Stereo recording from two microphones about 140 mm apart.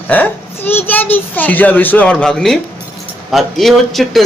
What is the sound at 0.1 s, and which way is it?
A child's voice, 10° left (ahead or behind).